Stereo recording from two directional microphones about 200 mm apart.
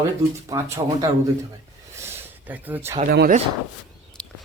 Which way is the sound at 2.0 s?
10° right (ahead or behind).